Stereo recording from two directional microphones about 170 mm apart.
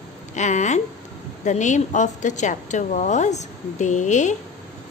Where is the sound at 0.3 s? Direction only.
45° left (ahead or behind).